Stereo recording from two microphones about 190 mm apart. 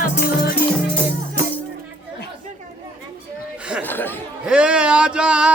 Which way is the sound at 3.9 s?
10° left (ahead or behind).